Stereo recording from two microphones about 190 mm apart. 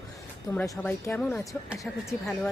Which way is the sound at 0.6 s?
15° left (ahead or behind).